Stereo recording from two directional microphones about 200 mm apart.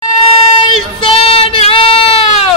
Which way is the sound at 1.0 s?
30° left (ahead or behind).